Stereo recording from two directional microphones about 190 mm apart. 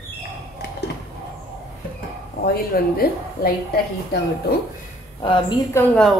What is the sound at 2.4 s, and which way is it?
A woman's voice, 55° left (ahead or behind).